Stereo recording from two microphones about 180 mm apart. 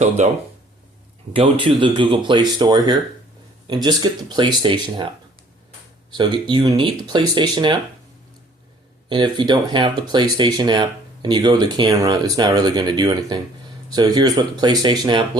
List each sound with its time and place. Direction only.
0.2 s speech: 40° right (ahead or behind)
1.3 s speech: 30° right (ahead or behind)
6.1 s speech: 25° right (ahead or behind)
9.0 s speech: 25° right (ahead or behind)